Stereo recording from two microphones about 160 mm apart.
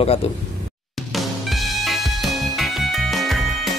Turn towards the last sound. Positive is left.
turn(degrees=0)  # may be behind; listen again after turning